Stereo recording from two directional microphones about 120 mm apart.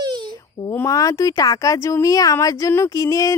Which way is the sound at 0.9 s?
30° left (ahead or behind).